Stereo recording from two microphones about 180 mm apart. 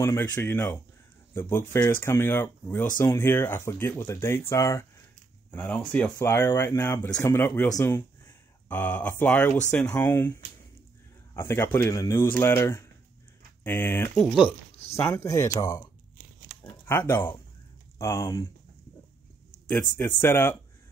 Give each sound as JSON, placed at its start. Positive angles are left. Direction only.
{"t": 0.0, "sound": "speech", "side_deg": 10}
{"t": 14.4, "sound": "speech", "side_deg": 35}
{"t": 15.0, "sound": "speech", "side_deg": 15}
{"t": 20.2, "sound": "speech", "side_deg": 10}